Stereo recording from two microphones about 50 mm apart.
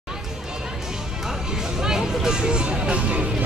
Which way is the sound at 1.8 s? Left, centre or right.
Centre.